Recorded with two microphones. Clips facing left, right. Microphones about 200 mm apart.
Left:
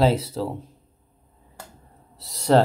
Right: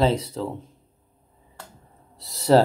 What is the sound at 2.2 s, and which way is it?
Speech, centre (ahead or behind).